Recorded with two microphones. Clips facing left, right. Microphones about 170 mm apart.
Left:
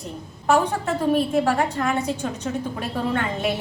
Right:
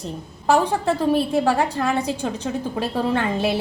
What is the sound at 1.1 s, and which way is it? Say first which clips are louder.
A woman's voice: right 1 dB; 30° right (ahead or behind).